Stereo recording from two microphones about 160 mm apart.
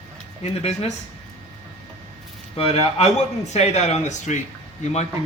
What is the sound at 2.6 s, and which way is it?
A man's voice, 40° left (ahead or behind).